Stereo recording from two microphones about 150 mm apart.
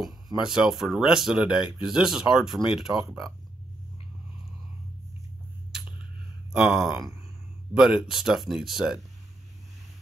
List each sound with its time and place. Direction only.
0.0 s speech: 5° right (ahead or behind)
6.5 s speech: 5° right (ahead or behind)